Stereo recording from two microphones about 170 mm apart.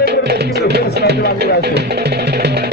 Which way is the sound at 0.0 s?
75° right (ahead or behind).